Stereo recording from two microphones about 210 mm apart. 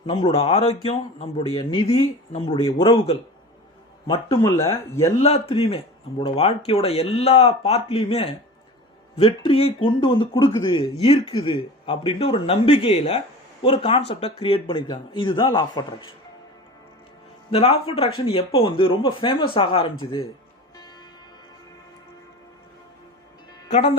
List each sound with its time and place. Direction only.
0.1 s a man's voice: 25° left (ahead or behind)
5.2 s a man's voice: 30° left (ahead or behind)
17.5 s a man's voice: 25° left (ahead or behind)